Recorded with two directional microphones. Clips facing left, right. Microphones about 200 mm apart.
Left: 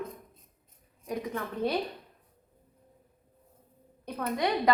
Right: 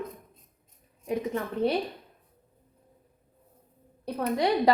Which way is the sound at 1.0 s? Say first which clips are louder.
Right 4 dB; 25° right (ahead or behind).